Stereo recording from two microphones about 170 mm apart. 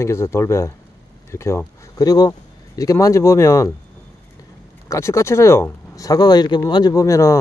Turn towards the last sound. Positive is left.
turn(degrees=20)  # may be behind; listen again after turning